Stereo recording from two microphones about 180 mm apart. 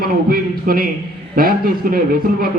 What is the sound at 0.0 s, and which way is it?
A man's voice, 55° right (ahead or behind).